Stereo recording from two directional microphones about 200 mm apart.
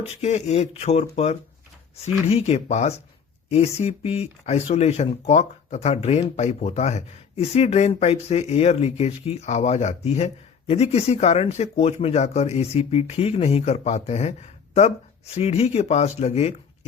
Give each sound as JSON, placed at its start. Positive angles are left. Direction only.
{"t": 0.1, "sound": "speech", "side_deg": 35}